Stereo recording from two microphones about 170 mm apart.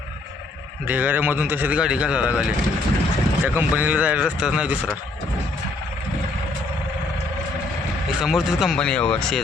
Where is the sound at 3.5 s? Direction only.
10° right (ahead or behind).